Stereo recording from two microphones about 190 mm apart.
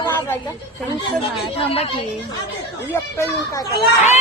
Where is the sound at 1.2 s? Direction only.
30° left (ahead or behind).